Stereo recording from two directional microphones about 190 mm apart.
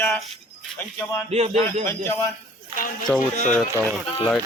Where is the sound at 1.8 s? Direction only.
15° left (ahead or behind).